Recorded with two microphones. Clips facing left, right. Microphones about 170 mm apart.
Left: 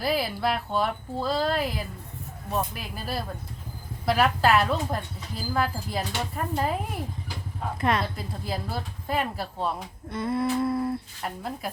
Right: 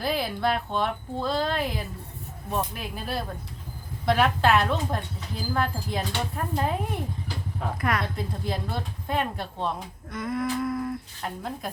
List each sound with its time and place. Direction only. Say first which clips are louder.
0.0 s speech: even; 5° left (ahead or behind)
7.8 s humming: left 3 dB; 25° left (ahead or behind)
8.1 s speech: right 2 dB; 5° left (ahead or behind)
10.1 s humming: left 2 dB; 30° left (ahead or behind)
11.2 s speech: even; 5° left (ahead or behind)